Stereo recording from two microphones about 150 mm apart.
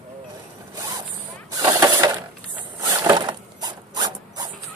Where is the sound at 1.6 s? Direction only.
25° right (ahead or behind).